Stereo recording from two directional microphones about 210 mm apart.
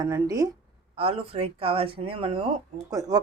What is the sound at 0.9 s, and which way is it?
Speech, 25° right (ahead or behind).